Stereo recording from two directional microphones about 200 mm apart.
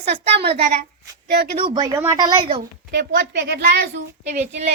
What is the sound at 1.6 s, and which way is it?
Speech, 25° right (ahead or behind).